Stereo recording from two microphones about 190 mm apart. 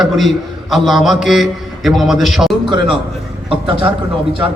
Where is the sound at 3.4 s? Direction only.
25° right (ahead or behind).